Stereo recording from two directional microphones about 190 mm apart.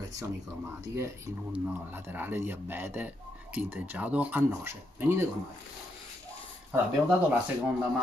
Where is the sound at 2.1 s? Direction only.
10° right (ahead or behind).